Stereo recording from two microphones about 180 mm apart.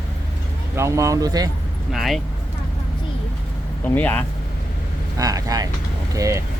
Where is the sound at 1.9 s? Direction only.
Centre (ahead or behind).